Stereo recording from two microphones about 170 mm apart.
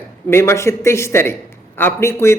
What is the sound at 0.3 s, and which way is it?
A man's voice, 15° left (ahead or behind).